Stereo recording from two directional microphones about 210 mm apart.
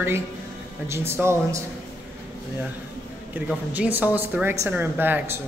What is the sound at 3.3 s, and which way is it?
A woman's voice, 5° right (ahead or behind).